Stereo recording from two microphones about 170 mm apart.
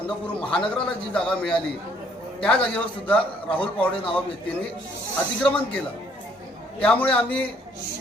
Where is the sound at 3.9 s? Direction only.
30° left (ahead or behind).